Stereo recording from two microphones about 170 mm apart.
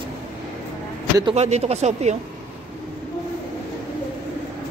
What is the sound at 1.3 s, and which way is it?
Speech, 40° right (ahead or behind).